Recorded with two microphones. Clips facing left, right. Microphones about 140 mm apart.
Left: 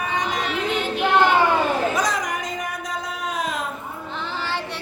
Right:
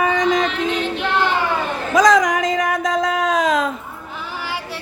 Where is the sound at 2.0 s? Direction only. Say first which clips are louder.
Right 10 dB; 90° right.